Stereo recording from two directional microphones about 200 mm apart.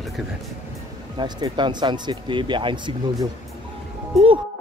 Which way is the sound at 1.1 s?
20° right (ahead or behind).